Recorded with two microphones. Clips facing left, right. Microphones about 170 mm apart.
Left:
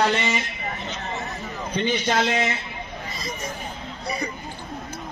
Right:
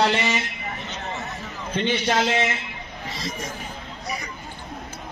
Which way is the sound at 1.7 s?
5° right (ahead or behind).